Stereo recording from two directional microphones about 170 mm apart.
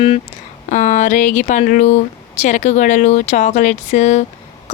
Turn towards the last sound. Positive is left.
turn(degrees=40)  # may be behind; listen again after turning